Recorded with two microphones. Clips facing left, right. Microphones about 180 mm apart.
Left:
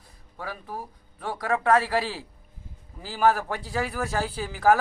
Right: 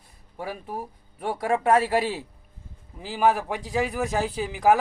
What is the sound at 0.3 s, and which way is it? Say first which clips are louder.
A man's voice: right 3 dB; 25° right (ahead or behind).